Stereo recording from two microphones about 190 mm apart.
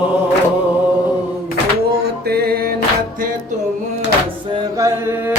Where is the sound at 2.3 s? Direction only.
55° right (ahead or behind).